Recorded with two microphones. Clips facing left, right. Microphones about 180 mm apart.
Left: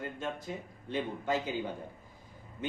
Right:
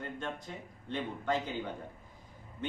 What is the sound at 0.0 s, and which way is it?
A man's voice, 5° left (ahead or behind).